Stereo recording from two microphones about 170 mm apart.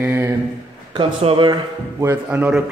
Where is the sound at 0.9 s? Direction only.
35° right (ahead or behind).